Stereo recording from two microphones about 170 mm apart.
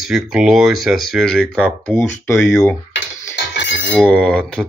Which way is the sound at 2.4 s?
15° left (ahead or behind).